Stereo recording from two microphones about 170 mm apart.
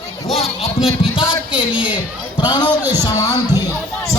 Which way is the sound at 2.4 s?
25° left (ahead or behind).